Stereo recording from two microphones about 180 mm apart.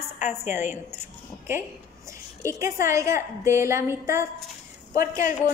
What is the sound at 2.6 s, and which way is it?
A woman's voice, 15° right (ahead or behind).